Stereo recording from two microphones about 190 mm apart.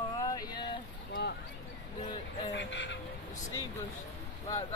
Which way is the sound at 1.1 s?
60° left (ahead or behind).